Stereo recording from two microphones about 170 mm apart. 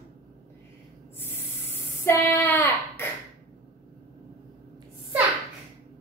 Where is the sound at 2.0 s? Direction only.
10° left (ahead or behind).